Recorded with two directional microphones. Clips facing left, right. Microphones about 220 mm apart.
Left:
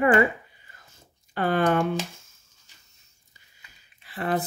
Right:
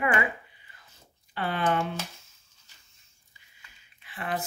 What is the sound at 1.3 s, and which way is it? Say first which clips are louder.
Speech: left 6 dB; 45° left (ahead or behind).